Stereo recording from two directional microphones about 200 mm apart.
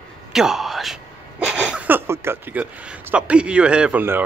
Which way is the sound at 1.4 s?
5° right (ahead or behind).